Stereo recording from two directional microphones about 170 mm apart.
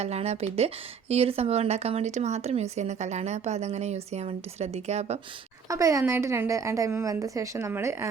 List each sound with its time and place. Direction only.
0.0 s speech: 40° right (ahead or behind)
5.6 s a woman's voice: 20° right (ahead or behind)